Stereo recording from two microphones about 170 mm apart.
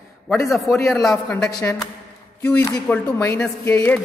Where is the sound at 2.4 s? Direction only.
15° left (ahead or behind).